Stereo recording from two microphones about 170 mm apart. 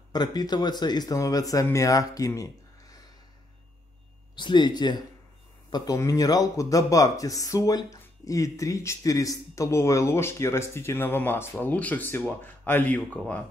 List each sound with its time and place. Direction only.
0.1 s speech: 25° left (ahead or behind)
4.4 s speech: 25° left (ahead or behind); by 13.4 s 10° left (ahead or behind)